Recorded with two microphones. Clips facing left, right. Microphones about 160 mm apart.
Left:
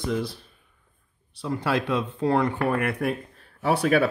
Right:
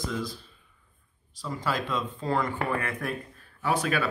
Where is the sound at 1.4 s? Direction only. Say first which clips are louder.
Left 5 dB; 65° left (ahead or behind).